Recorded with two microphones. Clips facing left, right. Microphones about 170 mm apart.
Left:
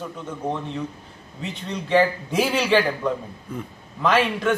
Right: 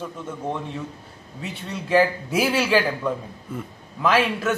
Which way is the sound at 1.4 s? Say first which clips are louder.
Left 2 dB; 5° right (ahead or behind).